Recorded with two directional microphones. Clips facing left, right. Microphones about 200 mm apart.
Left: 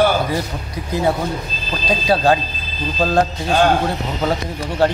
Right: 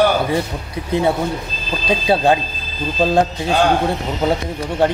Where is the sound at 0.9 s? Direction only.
25° right (ahead or behind).